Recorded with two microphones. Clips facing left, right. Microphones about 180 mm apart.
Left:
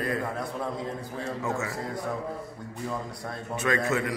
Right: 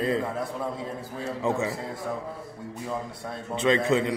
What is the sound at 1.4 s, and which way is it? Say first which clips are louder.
Speech: right 7 dB; 20° right (ahead or behind).